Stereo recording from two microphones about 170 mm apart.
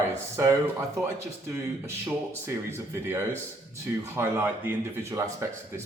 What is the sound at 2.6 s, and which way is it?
Speech, 15° right (ahead or behind).